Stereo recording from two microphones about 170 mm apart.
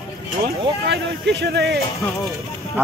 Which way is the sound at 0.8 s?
80° right.